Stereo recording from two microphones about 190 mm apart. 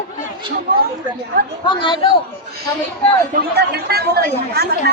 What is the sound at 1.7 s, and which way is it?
Speech, 25° left (ahead or behind).